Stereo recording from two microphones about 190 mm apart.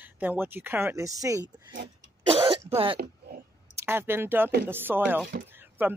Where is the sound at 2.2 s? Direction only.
30° right (ahead or behind).